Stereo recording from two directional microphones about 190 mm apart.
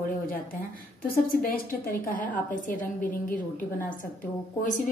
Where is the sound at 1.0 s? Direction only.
50° left (ahead or behind).